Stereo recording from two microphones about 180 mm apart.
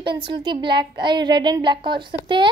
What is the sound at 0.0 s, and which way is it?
Speech, 25° right (ahead or behind).